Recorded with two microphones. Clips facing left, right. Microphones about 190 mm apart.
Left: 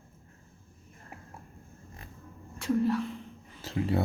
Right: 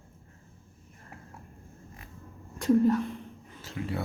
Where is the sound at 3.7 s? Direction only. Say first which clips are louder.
Left 5 dB; 30° left (ahead or behind).